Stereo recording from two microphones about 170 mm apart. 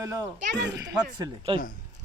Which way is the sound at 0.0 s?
20° right (ahead or behind).